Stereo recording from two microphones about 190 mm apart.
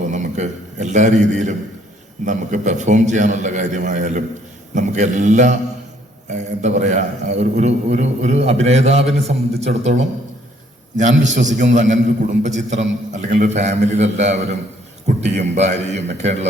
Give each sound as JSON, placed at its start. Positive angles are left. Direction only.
{"t": 0.0, "sound": "a sound", "side_deg": -40}
{"t": 2.2, "sound": "a man's voice", "side_deg": -40}
{"t": 11.4, "sound": "a man's voice", "side_deg": -40}